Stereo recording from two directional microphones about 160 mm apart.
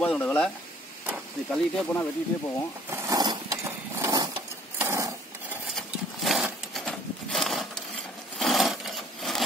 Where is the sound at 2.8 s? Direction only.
20° right (ahead or behind).